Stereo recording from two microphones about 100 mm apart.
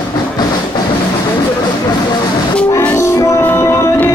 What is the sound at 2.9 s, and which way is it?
Music, 30° left (ahead or behind).